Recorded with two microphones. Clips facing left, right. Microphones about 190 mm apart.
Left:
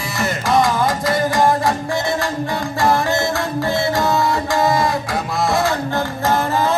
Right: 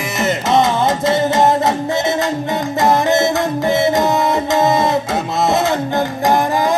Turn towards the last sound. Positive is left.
turn(degrees=-15)  # may be behind; listen again after turning